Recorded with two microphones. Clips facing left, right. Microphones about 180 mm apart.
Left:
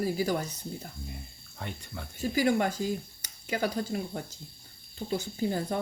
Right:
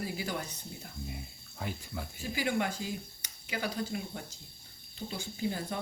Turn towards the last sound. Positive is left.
turn(degrees=40)  # may be behind; listen again after turning